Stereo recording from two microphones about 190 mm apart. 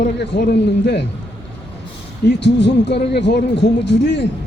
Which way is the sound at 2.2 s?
65° left (ahead or behind).